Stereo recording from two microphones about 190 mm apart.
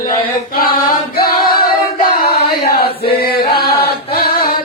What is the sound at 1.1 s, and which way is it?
Singing, 50° left (ahead or behind).